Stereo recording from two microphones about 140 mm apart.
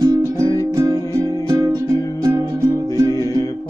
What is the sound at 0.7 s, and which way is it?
Music, 25° right (ahead or behind).